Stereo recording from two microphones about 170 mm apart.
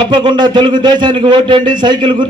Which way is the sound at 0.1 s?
25° right (ahead or behind).